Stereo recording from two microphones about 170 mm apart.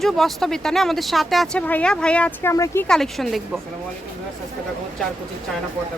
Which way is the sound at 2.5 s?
20° left (ahead or behind).